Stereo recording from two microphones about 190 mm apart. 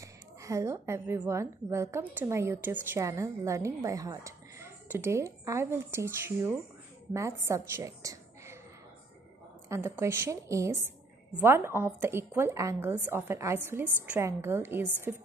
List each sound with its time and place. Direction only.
0.0 s a woman's voice: 15° right (ahead or behind)
9.7 s a woman's voice: 15° right (ahead or behind)